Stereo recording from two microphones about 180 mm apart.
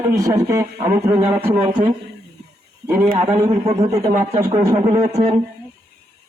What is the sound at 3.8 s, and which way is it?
Speech, 15° right (ahead or behind).